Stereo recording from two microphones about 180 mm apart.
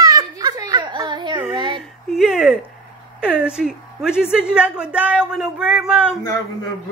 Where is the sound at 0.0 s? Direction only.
20° right (ahead or behind).